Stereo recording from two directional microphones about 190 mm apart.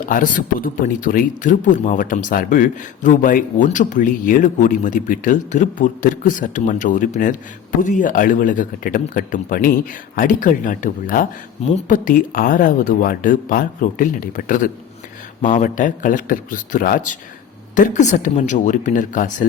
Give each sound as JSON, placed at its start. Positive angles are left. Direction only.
{"t": 0.0, "sound": "a man's voice", "side_deg": 45}